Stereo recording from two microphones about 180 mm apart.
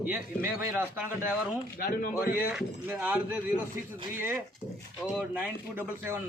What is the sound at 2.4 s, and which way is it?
A man's voice, 10° right (ahead or behind).